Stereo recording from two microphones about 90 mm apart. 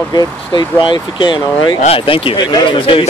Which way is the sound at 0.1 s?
50° left (ahead or behind).